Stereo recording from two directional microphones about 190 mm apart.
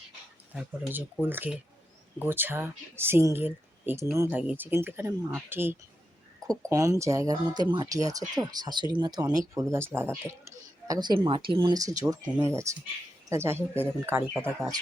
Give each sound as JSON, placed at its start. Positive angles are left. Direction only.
{"t": 0.5, "sound": "speech", "side_deg": -10}
{"t": 10.2, "sound": "a sound", "side_deg": -15}
{"t": 11.2, "sound": "speech", "side_deg": -25}